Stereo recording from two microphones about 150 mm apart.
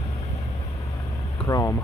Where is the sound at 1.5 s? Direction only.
20° left (ahead or behind).